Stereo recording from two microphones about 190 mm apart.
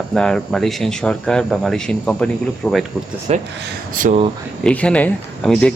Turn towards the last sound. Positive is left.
turn(degrees=5)  # may be behind; listen again after turning